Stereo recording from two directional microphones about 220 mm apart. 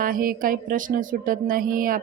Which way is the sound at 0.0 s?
40° right (ahead or behind).